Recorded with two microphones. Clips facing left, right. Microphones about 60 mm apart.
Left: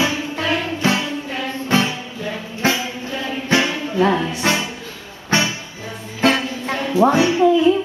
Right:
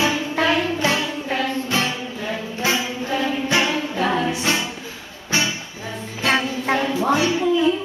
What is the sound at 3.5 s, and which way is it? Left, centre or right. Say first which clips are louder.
Music: left 6 dB; left.